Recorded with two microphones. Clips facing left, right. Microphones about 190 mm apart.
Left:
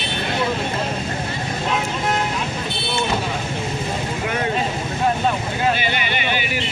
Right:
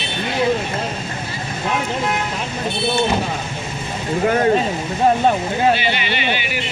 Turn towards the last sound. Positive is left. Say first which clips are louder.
# right 1 dB
turn(degrees=45)  # may be behind; listen again after turning